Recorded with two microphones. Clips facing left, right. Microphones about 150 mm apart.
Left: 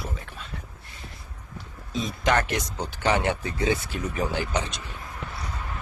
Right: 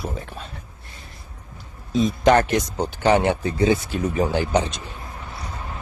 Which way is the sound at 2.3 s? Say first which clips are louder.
Right 6 dB; 35° right (ahead or behind).